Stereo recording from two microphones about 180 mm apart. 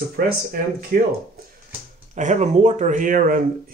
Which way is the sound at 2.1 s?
40° right (ahead or behind).